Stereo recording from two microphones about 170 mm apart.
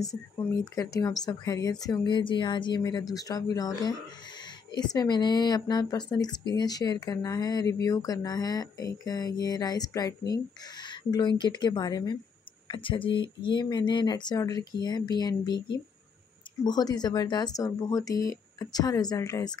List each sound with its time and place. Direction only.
0.0 s speech: centre (ahead or behind)
0.7 s speech: 20° left (ahead or behind)